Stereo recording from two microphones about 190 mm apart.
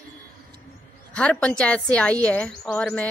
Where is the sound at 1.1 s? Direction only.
5° left (ahead or behind).